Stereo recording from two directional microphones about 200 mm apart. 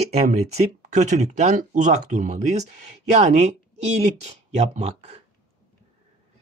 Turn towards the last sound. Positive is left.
turn(degrees=-30)  # may be behind; listen again after turning